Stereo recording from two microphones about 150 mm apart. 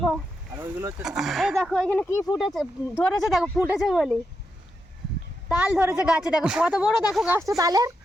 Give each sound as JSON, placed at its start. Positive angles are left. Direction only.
{"t": 0.5, "sound": "speech", "side_deg": -20}
{"t": 1.0, "sound": "a woman's voice", "side_deg": 0}
{"t": 2.4, "sound": "a woman's voice", "side_deg": 0}
{"t": 3.6, "sound": "a woman's voice", "side_deg": -5}
{"t": 5.5, "sound": "a woman's voice", "side_deg": -10}
{"t": 7.3, "sound": "speech", "side_deg": -20}